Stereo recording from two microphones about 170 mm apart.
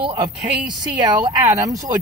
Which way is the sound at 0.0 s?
30° right (ahead or behind).